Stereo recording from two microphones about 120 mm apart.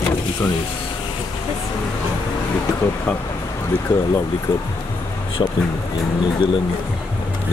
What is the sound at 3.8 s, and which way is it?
Speech, 30° left (ahead or behind).